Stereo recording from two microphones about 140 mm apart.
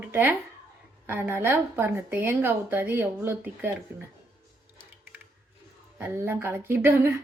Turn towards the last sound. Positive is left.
turn(degrees=-15)  # may be behind; listen again after turning